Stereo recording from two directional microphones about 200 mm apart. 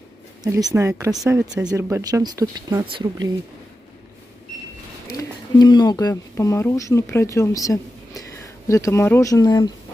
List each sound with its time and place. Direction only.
0.4 s speech: 20° right (ahead or behind)
1.4 s speech: 5° right (ahead or behind)
1.7 s speech: 15° right (ahead or behind)
5.0 s speech: 20° left (ahead or behind)